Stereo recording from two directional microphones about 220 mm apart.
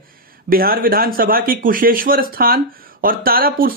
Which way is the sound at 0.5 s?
40° right (ahead or behind).